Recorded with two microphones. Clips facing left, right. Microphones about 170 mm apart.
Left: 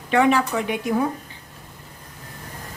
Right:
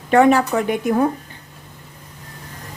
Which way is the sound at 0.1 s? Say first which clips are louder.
Right 5 dB; 45° right (ahead or behind).